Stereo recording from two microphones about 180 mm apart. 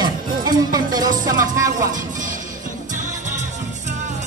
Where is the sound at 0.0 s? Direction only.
25° right (ahead or behind).